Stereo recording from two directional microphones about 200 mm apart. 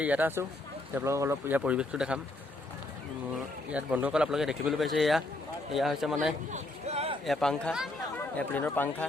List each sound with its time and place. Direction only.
0.0 s speech: 10° right (ahead or behind)
3.3 s speech: 5° right (ahead or behind)
6.5 s a sound: 35° right (ahead or behind)
7.3 s speech: centre (ahead or behind)